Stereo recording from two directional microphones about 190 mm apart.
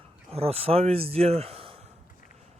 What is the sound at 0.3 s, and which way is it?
Speech, 30° right (ahead or behind).